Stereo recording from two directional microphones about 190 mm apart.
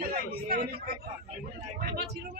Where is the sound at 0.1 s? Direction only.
55° right (ahead or behind).